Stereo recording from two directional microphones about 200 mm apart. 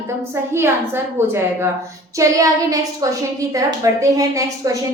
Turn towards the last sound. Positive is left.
turn(degrees=-15)  # may be behind; listen again after turning